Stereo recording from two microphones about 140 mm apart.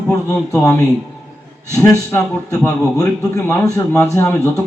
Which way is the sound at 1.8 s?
25° left (ahead or behind).